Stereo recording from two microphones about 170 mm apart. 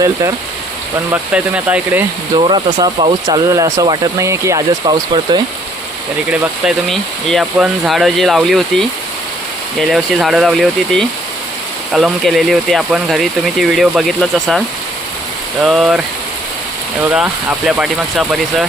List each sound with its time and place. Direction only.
1.1 s speech: 5° right (ahead or behind)
2.3 s speech: 25° right (ahead or behind)
6.3 s speech: centre (ahead or behind)
15.6 s speech: 5° right (ahead or behind)
17.7 s speech: 5° right (ahead or behind)